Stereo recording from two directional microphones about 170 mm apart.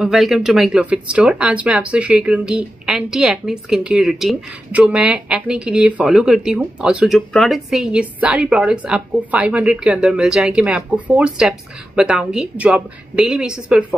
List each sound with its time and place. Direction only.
0.0 s speech: centre (ahead or behind)